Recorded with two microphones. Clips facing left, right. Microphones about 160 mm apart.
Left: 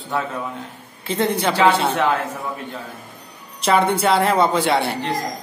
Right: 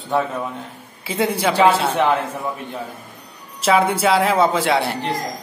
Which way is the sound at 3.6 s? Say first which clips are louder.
Right 1 dB; 5° right (ahead or behind).